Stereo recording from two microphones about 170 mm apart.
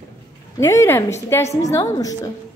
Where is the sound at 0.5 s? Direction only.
15° left (ahead or behind).